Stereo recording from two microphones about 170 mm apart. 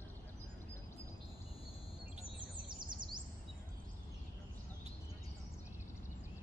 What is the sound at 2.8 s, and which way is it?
Chirp, 25° right (ahead or behind).